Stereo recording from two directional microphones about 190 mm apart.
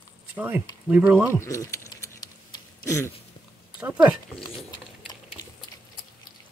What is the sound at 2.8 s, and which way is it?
Speech, 15° left (ahead or behind).